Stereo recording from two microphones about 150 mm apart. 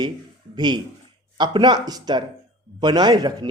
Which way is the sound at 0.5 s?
30° right (ahead or behind).